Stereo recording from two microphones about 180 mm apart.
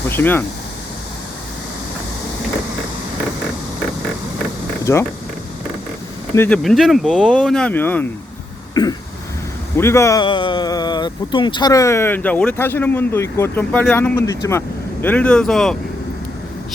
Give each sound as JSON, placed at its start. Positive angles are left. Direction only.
{"t": 0.1, "sound": "speech", "side_deg": 10}
{"t": 4.8, "sound": "speech", "side_deg": 15}
{"t": 6.3, "sound": "speech", "side_deg": 15}
{"t": 6.6, "sound": "speech", "side_deg": 0}
{"t": 8.7, "sound": "cough", "side_deg": 20}
{"t": 9.7, "sound": "speech", "side_deg": 15}
{"t": 10.2, "sound": "speech", "side_deg": 25}